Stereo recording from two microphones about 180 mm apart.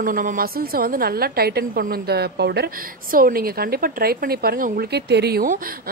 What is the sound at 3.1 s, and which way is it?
Speech, 55° right (ahead or behind).